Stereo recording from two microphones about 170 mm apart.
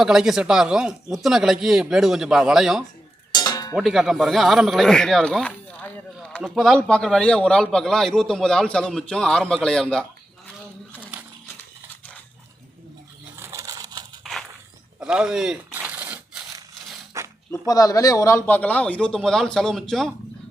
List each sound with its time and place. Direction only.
0.0 s speech: centre (ahead or behind)
3.3 s a sound: 25° left (ahead or behind)
3.8 s speech: centre (ahead or behind)
13.3 s crushing: 15° right (ahead or behind)
14.9 s a sound: 5° right (ahead or behind)
17.7 s a man's voice: 20° left (ahead or behind); by 20.1 s centre (ahead or behind)